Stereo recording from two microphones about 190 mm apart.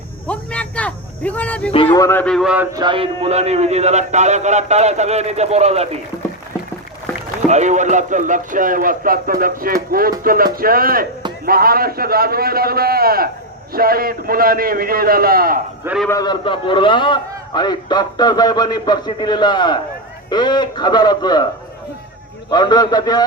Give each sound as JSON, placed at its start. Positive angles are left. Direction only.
{"t": 0.3, "sound": "a sound", "side_deg": 5}
{"t": 1.9, "sound": "speech", "side_deg": 10}
{"t": 2.7, "sound": "a man's voice", "side_deg": -25}
{"t": 7.4, "sound": "speech", "side_deg": -40}
{"t": 16.0, "sound": "a man's voice", "side_deg": 20}
{"t": 22.4, "sound": "a man's voice", "side_deg": 20}